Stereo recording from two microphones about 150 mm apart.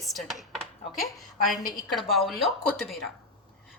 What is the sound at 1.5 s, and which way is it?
Speech, 25° left (ahead or behind).